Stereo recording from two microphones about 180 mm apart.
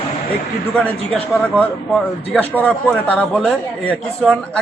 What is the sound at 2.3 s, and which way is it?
A man's voice, 10° left (ahead or behind).